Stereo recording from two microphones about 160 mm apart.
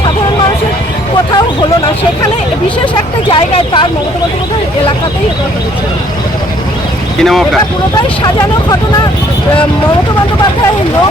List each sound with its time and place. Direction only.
3.2 s speech: 30° left (ahead or behind)
7.2 s speech: centre (ahead or behind)